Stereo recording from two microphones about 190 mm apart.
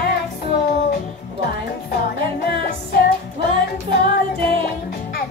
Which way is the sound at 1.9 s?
55° left (ahead or behind).